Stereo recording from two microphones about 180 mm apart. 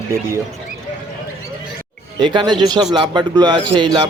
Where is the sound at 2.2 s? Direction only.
25° right (ahead or behind).